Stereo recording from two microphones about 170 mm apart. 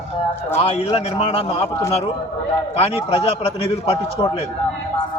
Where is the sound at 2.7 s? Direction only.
35° left (ahead or behind).